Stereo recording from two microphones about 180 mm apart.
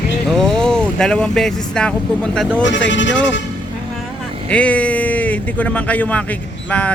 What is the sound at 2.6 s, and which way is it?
Speech, 90° left.